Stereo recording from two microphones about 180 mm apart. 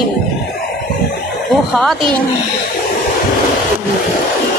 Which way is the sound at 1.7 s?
Centre (ahead or behind).